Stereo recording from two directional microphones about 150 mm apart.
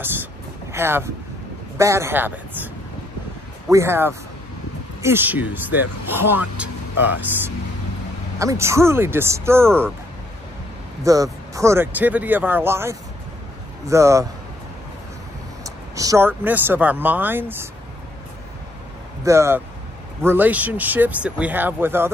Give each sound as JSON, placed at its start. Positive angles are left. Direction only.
{"t": 0.0, "sound": "vehicle", "side_deg": -15}
{"t": 1.8, "sound": "speech", "side_deg": -20}
{"t": 3.7, "sound": "speech", "side_deg": -15}
{"t": 11.1, "sound": "a man's voice", "side_deg": -20}
{"t": 15.6, "sound": "speech", "side_deg": -25}
{"t": 19.2, "sound": "speech", "side_deg": -20}